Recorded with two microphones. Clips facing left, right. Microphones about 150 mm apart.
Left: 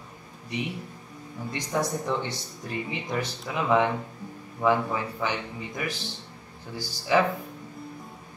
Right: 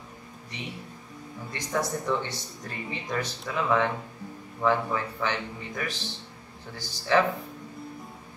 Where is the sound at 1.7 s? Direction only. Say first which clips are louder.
Left 1 dB; 20° left (ahead or behind).